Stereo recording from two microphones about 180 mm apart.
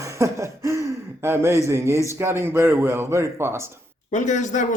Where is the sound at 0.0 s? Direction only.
15° right (ahead or behind).